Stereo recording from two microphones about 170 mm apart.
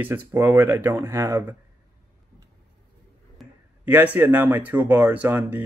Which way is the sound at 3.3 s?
10° right (ahead or behind).